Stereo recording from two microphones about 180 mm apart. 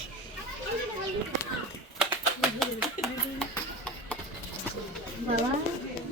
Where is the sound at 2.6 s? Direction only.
Centre (ahead or behind).